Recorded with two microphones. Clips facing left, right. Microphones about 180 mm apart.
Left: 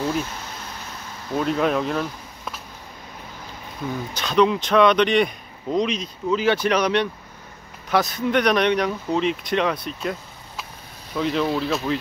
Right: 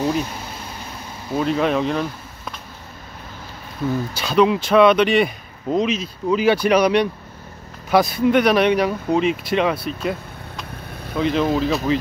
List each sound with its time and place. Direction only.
0.0 s speech: 15° right (ahead or behind)
1.3 s speech: centre (ahead or behind)
4.1 s speech: 5° right (ahead or behind)
11.4 s speech: 45° right (ahead or behind)